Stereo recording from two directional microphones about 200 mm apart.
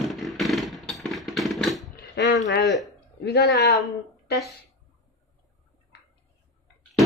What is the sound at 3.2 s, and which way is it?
Speech, 55° left (ahead or behind).